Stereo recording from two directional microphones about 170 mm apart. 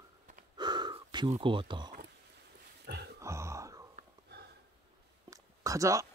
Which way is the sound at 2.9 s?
80° right.